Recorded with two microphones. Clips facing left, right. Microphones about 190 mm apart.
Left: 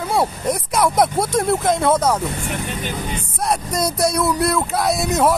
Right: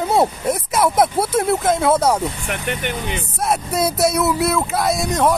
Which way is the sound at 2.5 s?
70° right (ahead or behind).